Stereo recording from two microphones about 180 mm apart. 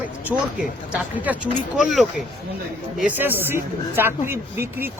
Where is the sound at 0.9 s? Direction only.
10° right (ahead or behind).